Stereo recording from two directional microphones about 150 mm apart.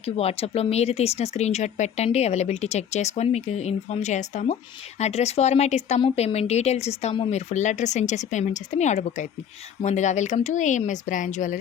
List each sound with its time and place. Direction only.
0.0 s speech: 40° left (ahead or behind); by 11.5 s 55° left (ahead or behind)